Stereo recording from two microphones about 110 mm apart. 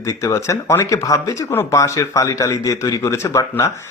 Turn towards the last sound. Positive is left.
turn(degrees=25)  # may be behind; listen again after turning